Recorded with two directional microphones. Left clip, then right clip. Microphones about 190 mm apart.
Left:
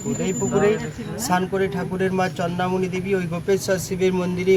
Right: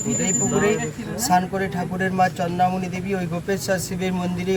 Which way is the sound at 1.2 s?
15° left (ahead or behind).